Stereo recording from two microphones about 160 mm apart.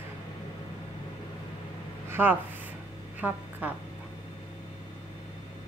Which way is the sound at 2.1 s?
10° right (ahead or behind).